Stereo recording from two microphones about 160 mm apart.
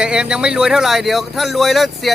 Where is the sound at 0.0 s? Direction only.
5° right (ahead or behind).